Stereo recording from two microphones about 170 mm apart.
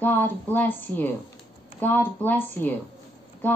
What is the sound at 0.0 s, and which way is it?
Speech, 10° left (ahead or behind).